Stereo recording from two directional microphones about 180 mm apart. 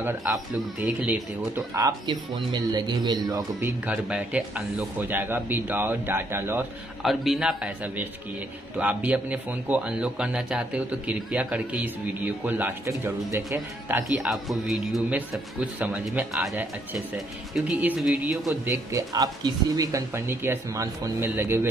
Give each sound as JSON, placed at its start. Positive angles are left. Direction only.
{"t": 0.0, "sound": "speech", "side_deg": -10}
{"t": 3.8, "sound": "speech", "side_deg": -5}
{"t": 7.0, "sound": "a man's voice", "side_deg": 0}